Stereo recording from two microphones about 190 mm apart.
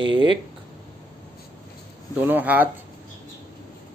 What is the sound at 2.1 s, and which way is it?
Speech, 10° right (ahead or behind).